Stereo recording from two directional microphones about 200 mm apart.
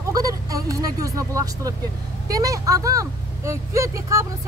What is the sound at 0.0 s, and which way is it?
Vehicle, 15° right (ahead or behind).